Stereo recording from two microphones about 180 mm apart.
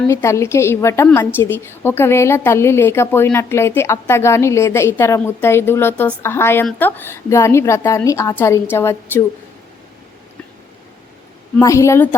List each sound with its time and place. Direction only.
0.1 s a woman's voice: 15° left (ahead or behind)
11.6 s a woman's voice: 15° left (ahead or behind)